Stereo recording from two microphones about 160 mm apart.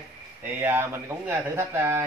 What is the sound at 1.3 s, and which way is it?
Speech, 15° right (ahead or behind).